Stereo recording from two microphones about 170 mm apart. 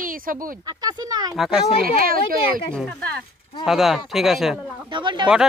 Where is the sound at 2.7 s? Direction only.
5° left (ahead or behind).